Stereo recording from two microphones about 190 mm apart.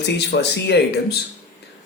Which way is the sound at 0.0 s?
60° left (ahead or behind).